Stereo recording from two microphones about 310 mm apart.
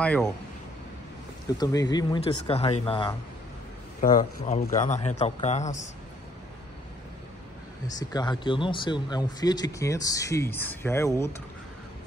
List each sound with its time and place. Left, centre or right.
0.0 s speech: centre
1.6 s speech: centre
4.0 s a man's voice: left
8.0 s speech: centre